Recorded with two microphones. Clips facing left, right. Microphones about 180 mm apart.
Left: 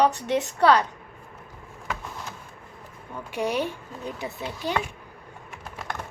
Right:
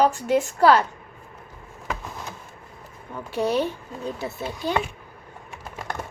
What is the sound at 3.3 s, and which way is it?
A woman's voice, 15° left (ahead or behind).